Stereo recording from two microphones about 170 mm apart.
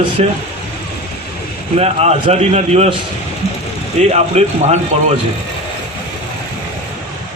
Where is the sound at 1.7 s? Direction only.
40° right (ahead or behind).